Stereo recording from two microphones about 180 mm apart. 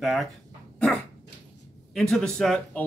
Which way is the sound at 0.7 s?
5° left (ahead or behind).